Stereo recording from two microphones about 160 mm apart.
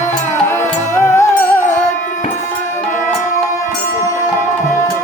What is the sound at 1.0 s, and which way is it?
Music, 15° left (ahead or behind).